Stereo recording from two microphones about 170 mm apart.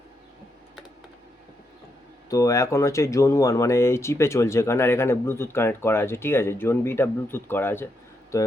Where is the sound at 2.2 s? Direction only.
20° left (ahead or behind).